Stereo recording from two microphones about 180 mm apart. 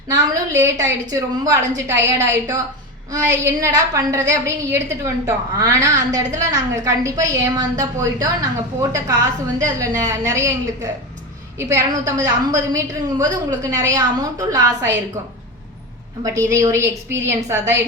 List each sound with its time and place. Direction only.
0.1 s a woman's voice: 15° right (ahead or behind)
11.5 s a woman's voice: 15° right (ahead or behind)
16.2 s a woman's voice: 15° right (ahead or behind)